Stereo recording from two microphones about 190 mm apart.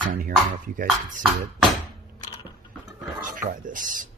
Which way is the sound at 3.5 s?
45° right (ahead or behind).